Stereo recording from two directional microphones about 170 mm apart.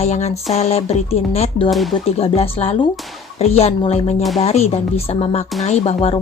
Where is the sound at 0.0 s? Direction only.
40° left (ahead or behind).